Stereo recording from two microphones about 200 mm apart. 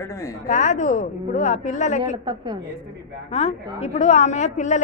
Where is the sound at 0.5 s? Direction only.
35° left (ahead or behind).